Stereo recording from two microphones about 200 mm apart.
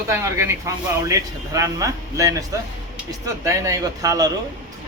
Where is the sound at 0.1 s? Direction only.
15° right (ahead or behind).